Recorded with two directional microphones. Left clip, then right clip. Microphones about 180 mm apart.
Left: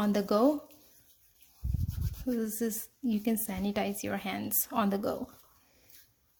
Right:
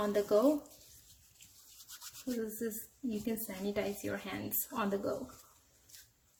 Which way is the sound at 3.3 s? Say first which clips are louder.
Left 5 dB; 55° left (ahead or behind).